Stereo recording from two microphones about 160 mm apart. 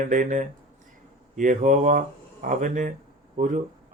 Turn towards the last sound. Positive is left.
turn(degrees=-55)  # may be behind; listen again after turning